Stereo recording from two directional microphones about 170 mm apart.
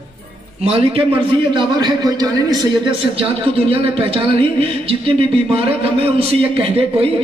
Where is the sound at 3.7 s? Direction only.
30° right (ahead or behind).